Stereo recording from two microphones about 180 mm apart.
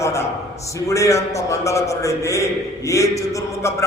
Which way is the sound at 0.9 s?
15° left (ahead or behind).